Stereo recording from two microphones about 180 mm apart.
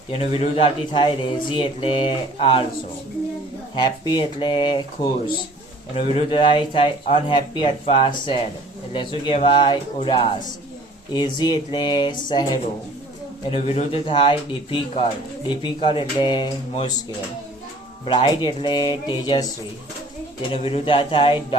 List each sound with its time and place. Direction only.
0.1 s speech: 35° left (ahead or behind)
3.8 s speech: 25° left (ahead or behind)
6.1 s speech: 30° left (ahead or behind)
13.5 s speech: 30° left (ahead or behind)
18.0 s speech: 25° left (ahead or behind)
20.5 s speech: 30° left (ahead or behind)